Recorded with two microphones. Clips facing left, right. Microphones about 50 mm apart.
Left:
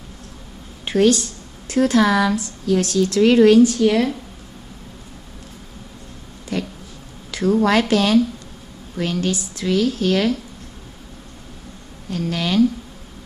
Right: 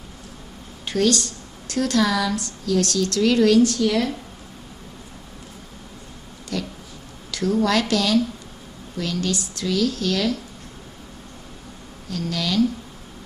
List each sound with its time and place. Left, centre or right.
0.8 s speech: left
6.5 s a sound: left
7.2 s a woman's voice: left
9.3 s speech: centre
12.1 s speech: left